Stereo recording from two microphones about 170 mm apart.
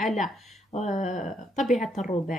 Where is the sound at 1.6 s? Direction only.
Centre (ahead or behind).